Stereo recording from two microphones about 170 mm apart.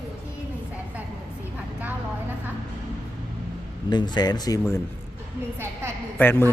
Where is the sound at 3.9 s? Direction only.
25° left (ahead or behind).